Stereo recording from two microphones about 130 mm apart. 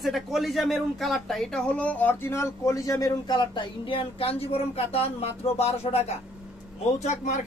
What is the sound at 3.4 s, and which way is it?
Speech, 40° left (ahead or behind).